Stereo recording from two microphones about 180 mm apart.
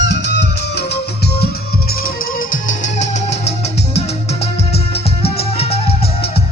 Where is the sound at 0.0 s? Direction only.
75° left (ahead or behind).